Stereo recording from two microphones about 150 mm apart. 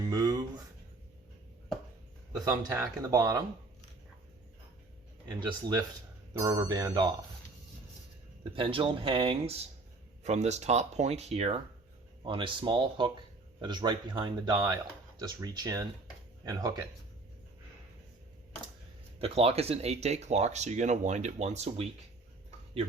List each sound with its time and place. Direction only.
0.1 s a sound: 25° right (ahead or behind)
2.4 s speech: 20° right (ahead or behind)
5.4 s speech: 30° right (ahead or behind)
8.5 s a man's voice: 35° right (ahead or behind)
10.2 s speech: 50° right (ahead or behind)
12.2 s a man's voice: 35° right (ahead or behind)
19.2 s speech: 40° right (ahead or behind)